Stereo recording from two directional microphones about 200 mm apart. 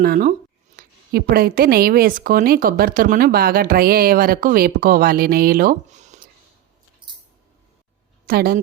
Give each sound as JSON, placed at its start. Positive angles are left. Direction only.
{"t": 0.0, "sound": "a woman's voice", "side_deg": -45}
{"t": 7.0, "sound": "a sound", "side_deg": -25}
{"t": 8.3, "sound": "a woman's voice", "side_deg": -50}